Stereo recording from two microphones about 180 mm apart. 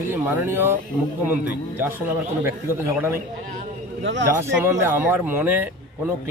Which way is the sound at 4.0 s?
90° right.